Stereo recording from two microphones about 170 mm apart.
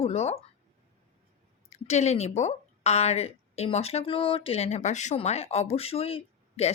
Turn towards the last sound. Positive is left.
turn(degrees=35)  # may be behind; listen again after turning